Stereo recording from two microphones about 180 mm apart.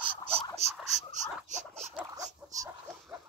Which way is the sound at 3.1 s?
10° right (ahead or behind).